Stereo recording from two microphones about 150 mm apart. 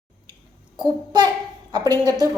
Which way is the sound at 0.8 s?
30° right (ahead or behind).